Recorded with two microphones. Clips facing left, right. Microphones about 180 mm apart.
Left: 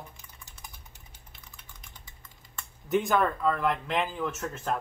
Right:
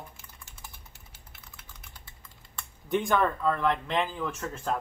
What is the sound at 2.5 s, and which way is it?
Speech, 5° left (ahead or behind).